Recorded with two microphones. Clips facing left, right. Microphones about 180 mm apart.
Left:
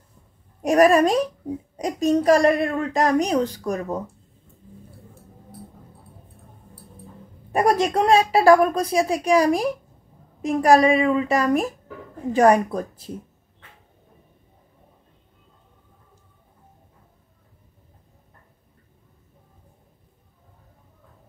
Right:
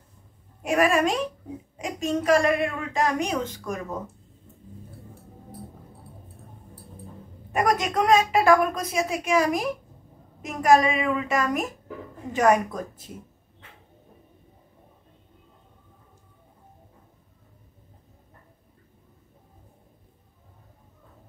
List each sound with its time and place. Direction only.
0.6 s a woman's voice: 40° left (ahead or behind)
7.5 s a woman's voice: 30° left (ahead or behind)